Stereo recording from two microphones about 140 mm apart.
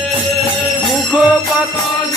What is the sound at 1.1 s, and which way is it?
Jingle bell, 10° right (ahead or behind).